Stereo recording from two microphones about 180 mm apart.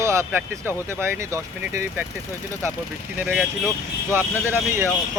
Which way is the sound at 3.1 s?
10° right (ahead or behind).